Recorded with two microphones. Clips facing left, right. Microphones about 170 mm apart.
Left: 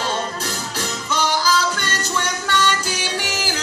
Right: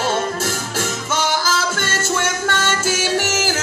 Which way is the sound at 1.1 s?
45° right (ahead or behind).